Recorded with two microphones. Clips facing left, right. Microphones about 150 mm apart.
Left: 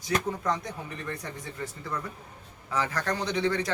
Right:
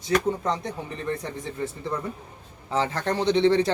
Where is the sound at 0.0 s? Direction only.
25° right (ahead or behind).